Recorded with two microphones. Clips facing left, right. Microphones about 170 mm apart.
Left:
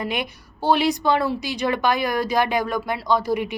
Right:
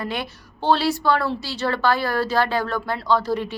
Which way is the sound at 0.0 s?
15° left (ahead or behind).